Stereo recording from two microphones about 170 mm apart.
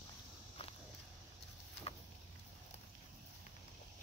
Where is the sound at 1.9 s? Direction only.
35° left (ahead or behind).